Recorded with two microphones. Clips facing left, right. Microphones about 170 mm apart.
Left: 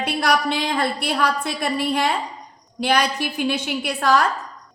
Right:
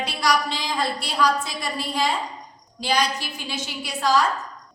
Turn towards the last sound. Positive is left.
turn(degrees=60)  # may be behind; listen again after turning